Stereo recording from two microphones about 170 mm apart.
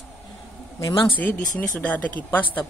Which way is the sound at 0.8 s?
25° left (ahead or behind).